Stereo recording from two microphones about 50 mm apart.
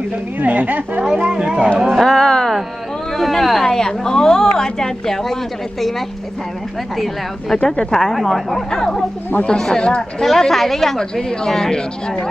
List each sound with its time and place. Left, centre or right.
0.4 s speech: right
1.0 s speech: centre
1.9 s a woman's voice: centre
7.5 s speech: centre
8.0 s a woman's voice: centre